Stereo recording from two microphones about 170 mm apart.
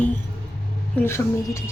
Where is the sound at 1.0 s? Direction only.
15° left (ahead or behind).